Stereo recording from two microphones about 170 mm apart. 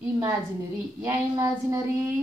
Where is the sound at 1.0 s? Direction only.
15° right (ahead or behind).